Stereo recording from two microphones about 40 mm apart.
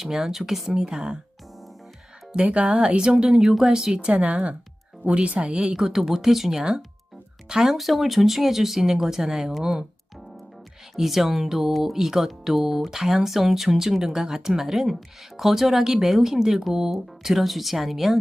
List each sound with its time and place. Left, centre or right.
0.0 s speech: centre
0.8 s speech: right
2.3 s speech: right
3.4 s speech: centre
4.1 s a woman's voice: right
5.8 s speech: centre
7.8 s speech: centre
10.9 s speech: centre
16.9 s speech: centre